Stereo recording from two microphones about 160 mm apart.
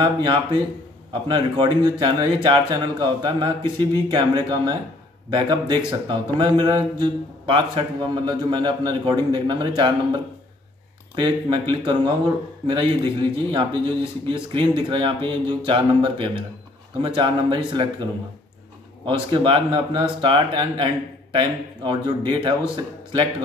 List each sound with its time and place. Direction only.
0.0 s a man's voice: 30° right (ahead or behind)
19.0 s a man's voice: 30° right (ahead or behind)